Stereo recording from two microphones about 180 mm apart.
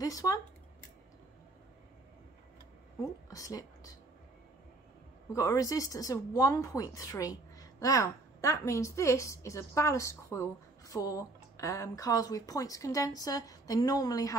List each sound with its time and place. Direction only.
0.0 s speech: 20° left (ahead or behind)
3.3 s a woman's voice: 20° left (ahead or behind)
5.3 s speech: 20° left (ahead or behind)